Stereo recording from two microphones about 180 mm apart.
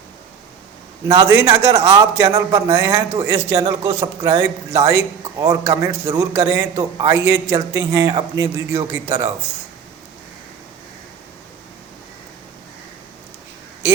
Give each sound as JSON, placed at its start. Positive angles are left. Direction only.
{"t": 1.0, "sound": "a man's voice", "side_deg": -20}